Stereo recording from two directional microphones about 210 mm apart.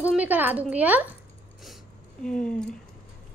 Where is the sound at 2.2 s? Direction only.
5° left (ahead or behind).